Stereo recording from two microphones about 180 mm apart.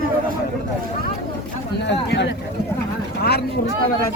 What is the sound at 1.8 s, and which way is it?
Speech, 75° left (ahead or behind).